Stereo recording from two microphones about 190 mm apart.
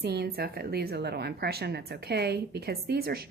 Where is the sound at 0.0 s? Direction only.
60° right (ahead or behind).